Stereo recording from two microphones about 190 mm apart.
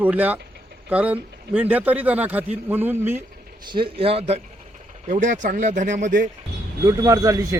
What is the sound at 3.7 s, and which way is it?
Speech, 30° right (ahead or behind).